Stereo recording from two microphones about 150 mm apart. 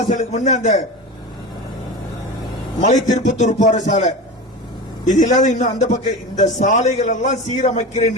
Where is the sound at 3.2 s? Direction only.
50° left (ahead or behind).